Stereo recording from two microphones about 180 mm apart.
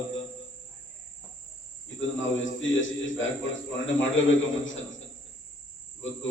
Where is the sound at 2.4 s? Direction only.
90° left.